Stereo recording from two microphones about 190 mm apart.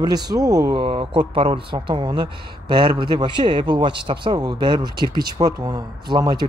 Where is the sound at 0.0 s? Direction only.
20° right (ahead or behind).